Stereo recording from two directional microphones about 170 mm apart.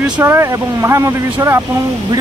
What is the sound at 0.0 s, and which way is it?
Speech, 15° right (ahead or behind).